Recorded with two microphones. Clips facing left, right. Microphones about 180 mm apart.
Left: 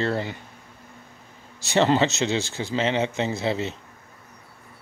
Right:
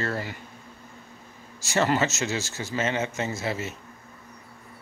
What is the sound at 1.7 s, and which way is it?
Speech, 20° left (ahead or behind).